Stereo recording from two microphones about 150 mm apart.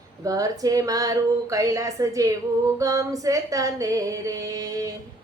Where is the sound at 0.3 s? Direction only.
25° right (ahead or behind).